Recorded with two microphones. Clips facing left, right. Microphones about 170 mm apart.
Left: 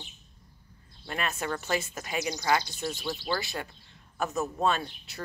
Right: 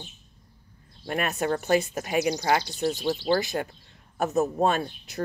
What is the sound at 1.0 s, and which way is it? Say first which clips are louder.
Speech: right 6 dB; 45° right (ahead or behind).